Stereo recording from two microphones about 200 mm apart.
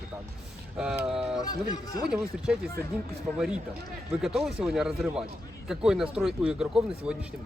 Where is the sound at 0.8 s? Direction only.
5° right (ahead or behind).